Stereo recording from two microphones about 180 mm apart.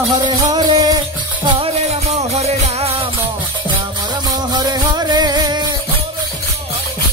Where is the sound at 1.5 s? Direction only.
35° right (ahead or behind).